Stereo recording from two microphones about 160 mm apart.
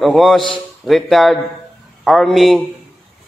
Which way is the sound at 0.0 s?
Centre (ahead or behind).